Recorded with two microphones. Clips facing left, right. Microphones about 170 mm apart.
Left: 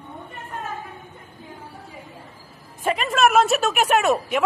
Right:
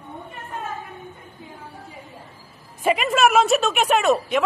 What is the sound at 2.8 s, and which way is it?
A woman's voice, 10° right (ahead or behind).